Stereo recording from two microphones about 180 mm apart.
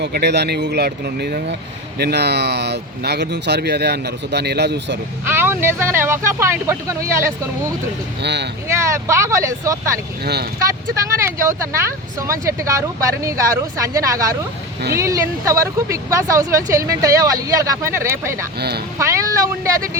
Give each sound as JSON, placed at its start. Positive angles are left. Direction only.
{"t": 0.0, "sound": "speech", "side_deg": -65}
{"t": 5.2, "sound": "speech", "side_deg": -10}
{"t": 8.2, "sound": "speech", "side_deg": -70}
{"t": 8.6, "sound": "speech", "side_deg": -15}
{"t": 11.0, "sound": "speech", "side_deg": -15}